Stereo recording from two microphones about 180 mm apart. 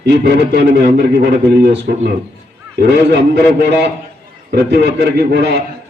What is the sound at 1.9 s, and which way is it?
Speech, 60° right (ahead or behind).